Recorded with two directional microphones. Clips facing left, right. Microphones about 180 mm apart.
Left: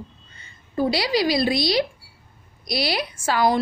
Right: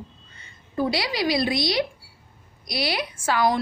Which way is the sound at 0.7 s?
30° left (ahead or behind).